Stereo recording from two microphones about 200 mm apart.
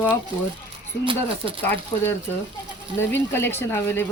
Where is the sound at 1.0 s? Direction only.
25° right (ahead or behind).